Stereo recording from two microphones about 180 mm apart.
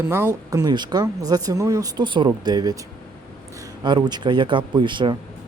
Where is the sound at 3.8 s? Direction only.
25° right (ahead or behind).